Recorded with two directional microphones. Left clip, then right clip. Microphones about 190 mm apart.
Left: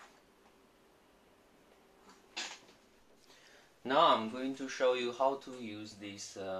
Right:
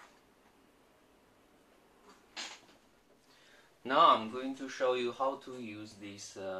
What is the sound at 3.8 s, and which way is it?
Speech, 15° left (ahead or behind).